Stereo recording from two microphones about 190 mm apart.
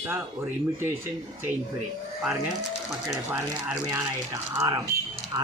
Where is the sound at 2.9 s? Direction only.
5° right (ahead or behind); by 5.5 s 20° right (ahead or behind).